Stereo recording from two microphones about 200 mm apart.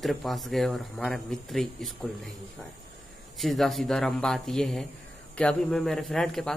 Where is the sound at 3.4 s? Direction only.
Centre (ahead or behind).